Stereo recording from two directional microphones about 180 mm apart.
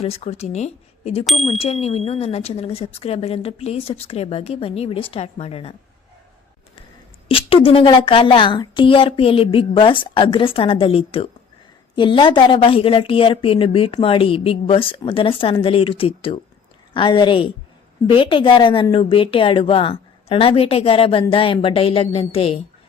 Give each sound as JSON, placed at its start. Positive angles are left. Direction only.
{"t": 0.0, "sound": "a woman's voice", "side_deg": 35}
{"t": 1.2, "sound": "speech", "side_deg": 0}
{"t": 1.5, "sound": "a woman's voice", "side_deg": 35}
{"t": 7.3, "sound": "a woman's voice", "side_deg": 30}